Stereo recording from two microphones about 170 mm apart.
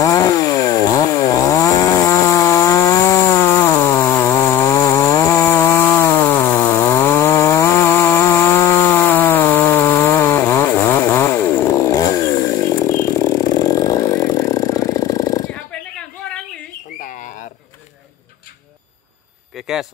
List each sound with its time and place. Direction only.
0.0 s chainsaw: 20° left (ahead or behind)
17.0 s bird: 50° left (ahead or behind)
19.5 s a sound: centre (ahead or behind)